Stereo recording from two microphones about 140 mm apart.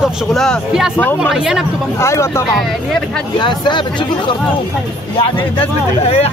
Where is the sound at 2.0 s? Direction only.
20° left (ahead or behind).